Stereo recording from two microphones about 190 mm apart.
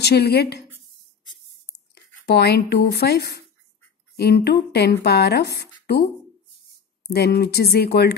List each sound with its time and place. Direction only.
0.0 s speech: 60° left (ahead or behind)
2.2 s speech: 60° left (ahead or behind)